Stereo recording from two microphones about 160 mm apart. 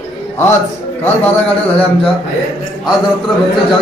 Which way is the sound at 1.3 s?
10° left (ahead or behind).